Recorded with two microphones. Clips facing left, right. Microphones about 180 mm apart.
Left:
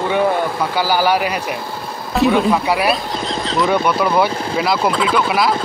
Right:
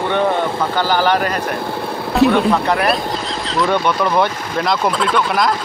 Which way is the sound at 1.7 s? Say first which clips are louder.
Right 5 dB; 60° right (ahead or behind).